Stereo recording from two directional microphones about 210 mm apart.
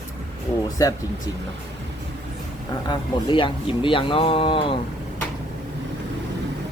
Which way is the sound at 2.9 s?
25° left (ahead or behind).